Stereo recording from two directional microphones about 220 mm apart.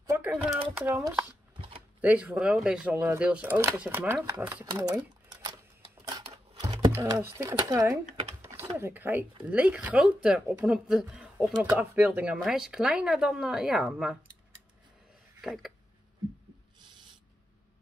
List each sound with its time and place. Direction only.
0.0 s typing: 10° right (ahead or behind)
0.7 s speech: 5° right (ahead or behind)
6.0 s a sound: 20° right (ahead or behind)
8.0 s typing: 35° right (ahead or behind)
8.4 s typing: 10° right (ahead or behind)
8.7 s speech: 10° right (ahead or behind)
15.4 s a sound: centre (ahead or behind)